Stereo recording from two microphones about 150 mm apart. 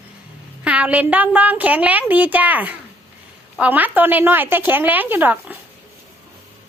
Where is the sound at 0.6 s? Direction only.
10° right (ahead or behind).